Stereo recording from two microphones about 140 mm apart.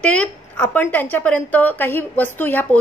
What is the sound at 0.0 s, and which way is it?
A woman's voice, 10° left (ahead or behind).